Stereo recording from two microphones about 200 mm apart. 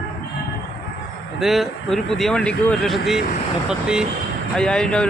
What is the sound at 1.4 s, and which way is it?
Speech, centre (ahead or behind).